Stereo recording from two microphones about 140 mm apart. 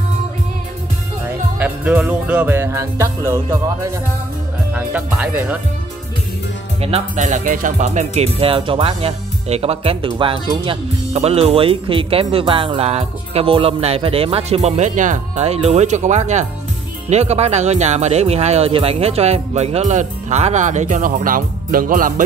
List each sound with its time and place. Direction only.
1.6 s music: 10° right (ahead or behind)
4.7 s music: 10° right (ahead or behind)
6.8 s speech: 55° right (ahead or behind); by 22.2 s 75° right (ahead or behind)